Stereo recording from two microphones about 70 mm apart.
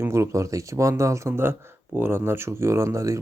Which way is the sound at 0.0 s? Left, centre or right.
Right.